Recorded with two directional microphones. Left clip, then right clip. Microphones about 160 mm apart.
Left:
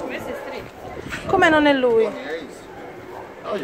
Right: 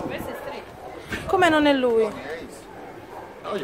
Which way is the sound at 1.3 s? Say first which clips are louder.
Left 3 dB; 15° right (ahead or behind).